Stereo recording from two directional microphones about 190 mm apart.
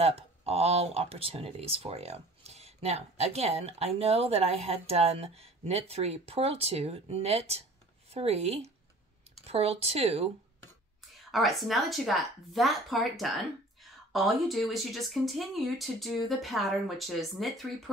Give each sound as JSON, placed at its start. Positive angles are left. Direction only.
{"t": 0.0, "sound": "speech", "side_deg": -30}
{"t": 11.3, "sound": "speech", "side_deg": 0}